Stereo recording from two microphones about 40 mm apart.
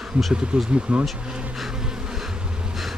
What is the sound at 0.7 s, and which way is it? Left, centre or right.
Speech, right.